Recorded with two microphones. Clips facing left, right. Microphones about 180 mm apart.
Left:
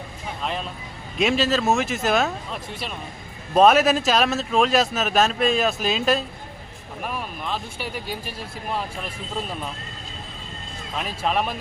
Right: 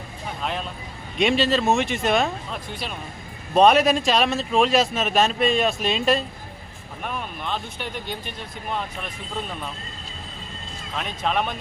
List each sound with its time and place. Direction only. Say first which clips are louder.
0.4 s a man's voice: even; centre (ahead or behind)
10.9 s a man's voice: left 1 dB; 5° left (ahead or behind)